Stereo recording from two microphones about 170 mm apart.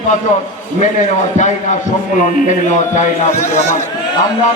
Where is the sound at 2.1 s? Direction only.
50° left (ahead or behind).